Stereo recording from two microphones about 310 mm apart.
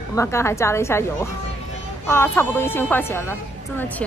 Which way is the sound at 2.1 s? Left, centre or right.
Centre.